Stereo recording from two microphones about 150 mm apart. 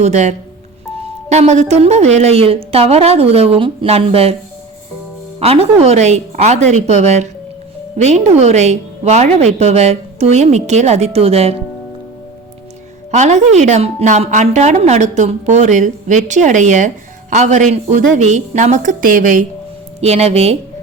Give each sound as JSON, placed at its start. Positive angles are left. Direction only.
{"t": 0.0, "sound": "a woman's voice", "side_deg": -50}
{"t": 5.4, "sound": "a woman's voice", "side_deg": -45}
{"t": 13.1, "sound": "a woman's voice", "side_deg": -50}
{"t": 20.0, "sound": "a woman's voice", "side_deg": -45}